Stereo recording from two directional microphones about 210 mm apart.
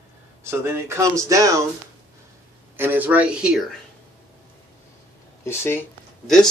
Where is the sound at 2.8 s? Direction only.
10° right (ahead or behind).